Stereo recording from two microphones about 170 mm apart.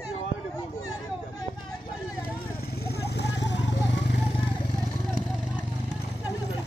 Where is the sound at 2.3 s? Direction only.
65° left (ahead or behind); by 4.2 s 80° left.